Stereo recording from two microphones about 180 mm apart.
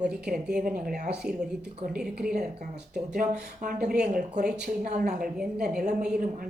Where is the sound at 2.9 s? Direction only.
5° right (ahead or behind).